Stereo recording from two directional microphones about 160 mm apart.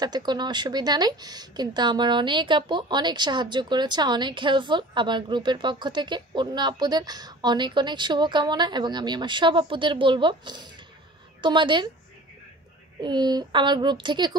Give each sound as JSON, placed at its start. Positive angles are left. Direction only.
{"t": 0.0, "sound": "a woman's voice", "side_deg": -25}
{"t": 13.0, "sound": "a woman's voice", "side_deg": -25}